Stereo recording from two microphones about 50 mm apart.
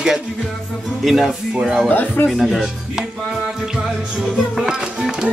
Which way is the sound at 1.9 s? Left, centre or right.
Left.